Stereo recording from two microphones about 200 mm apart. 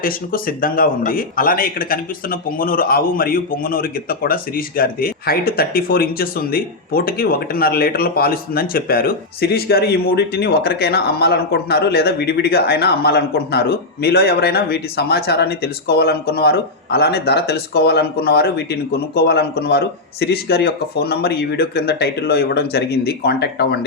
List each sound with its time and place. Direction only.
0.0 s speech: 45° left (ahead or behind)